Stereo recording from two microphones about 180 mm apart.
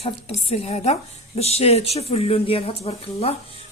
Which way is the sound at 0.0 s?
35° left (ahead or behind).